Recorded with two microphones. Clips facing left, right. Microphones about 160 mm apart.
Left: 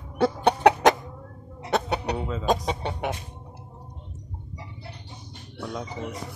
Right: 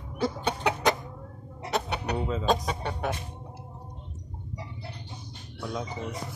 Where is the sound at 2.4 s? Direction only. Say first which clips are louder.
Left 4 dB; 20° left (ahead or behind).